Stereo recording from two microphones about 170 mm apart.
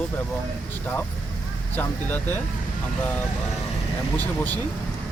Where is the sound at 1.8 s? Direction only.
10° left (ahead or behind).